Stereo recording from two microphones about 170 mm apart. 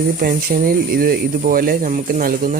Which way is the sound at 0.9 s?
60° right (ahead or behind).